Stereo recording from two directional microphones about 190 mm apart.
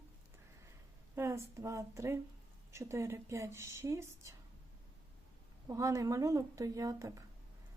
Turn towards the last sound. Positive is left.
turn(degrees=-15)  # may be behind; listen again after turning